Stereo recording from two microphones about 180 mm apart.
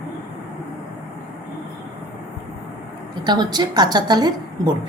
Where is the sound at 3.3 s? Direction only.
25° right (ahead or behind).